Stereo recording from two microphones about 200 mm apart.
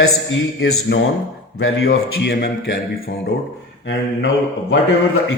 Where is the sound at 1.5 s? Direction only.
70° left (ahead or behind).